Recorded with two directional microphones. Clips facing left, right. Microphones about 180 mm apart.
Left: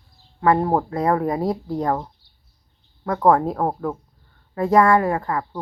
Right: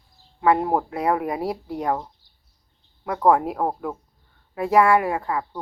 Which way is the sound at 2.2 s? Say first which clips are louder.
Left 2 dB; 45° right (ahead or behind).